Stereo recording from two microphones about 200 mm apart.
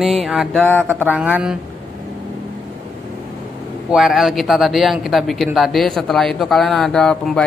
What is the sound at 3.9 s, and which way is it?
Speech, centre (ahead or behind).